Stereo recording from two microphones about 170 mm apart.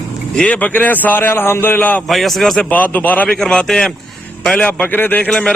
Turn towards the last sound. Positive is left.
turn(degrees=5)  # may be behind; listen again after turning